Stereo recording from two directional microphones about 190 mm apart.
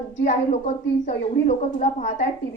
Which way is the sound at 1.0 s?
40° left (ahead or behind).